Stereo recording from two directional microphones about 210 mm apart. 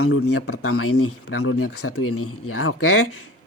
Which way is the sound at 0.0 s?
85° left.